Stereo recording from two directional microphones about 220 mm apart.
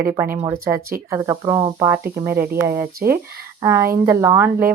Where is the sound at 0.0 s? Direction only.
10° right (ahead or behind).